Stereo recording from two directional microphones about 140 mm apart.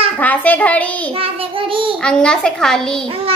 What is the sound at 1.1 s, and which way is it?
Child singing, 40° right (ahead or behind).